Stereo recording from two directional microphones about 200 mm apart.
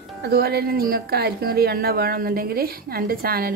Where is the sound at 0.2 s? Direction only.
50° right (ahead or behind).